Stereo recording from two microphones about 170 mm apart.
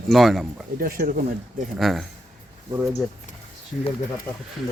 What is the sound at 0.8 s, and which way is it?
Speech, 60° right (ahead or behind).